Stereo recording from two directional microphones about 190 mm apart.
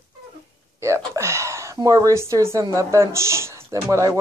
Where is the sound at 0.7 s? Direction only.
15° right (ahead or behind).